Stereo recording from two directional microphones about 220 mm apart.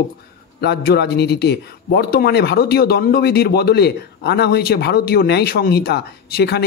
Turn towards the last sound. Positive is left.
turn(degrees=45)  # may be behind; listen again after turning